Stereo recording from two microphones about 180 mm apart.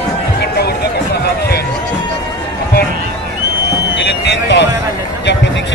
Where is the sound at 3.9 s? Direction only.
75° left (ahead or behind).